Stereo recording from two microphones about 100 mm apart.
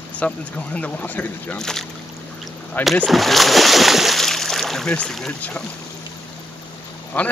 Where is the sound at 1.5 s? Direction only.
5° left (ahead or behind).